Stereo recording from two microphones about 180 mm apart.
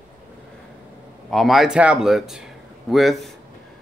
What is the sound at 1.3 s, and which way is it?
Speech, centre (ahead or behind).